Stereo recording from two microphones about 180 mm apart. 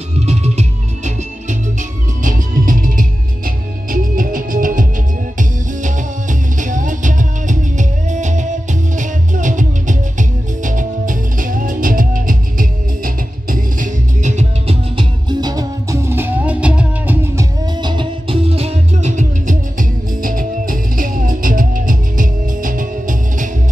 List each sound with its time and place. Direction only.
0.3 s music: 35° right (ahead or behind); by 17.5 s 10° right (ahead or behind)
17.8 s music: 30° right (ahead or behind); by 23.5 s 45° right (ahead or behind)